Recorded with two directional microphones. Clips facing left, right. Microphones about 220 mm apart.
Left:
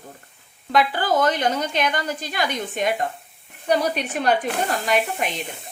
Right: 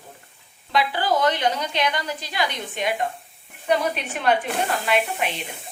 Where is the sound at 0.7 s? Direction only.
50° left (ahead or behind).